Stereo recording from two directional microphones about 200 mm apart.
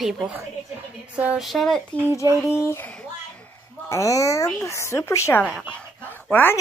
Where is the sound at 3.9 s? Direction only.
15° left (ahead or behind).